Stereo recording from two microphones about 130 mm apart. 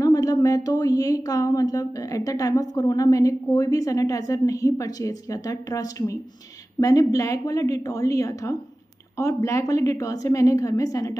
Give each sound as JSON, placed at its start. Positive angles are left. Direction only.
{"t": 0.0, "sound": "speech", "side_deg": 25}